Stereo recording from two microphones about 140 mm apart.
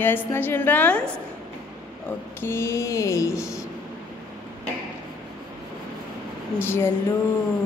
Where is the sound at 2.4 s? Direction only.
20° left (ahead or behind).